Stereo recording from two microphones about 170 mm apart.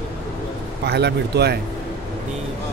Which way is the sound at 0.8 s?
75° right (ahead or behind).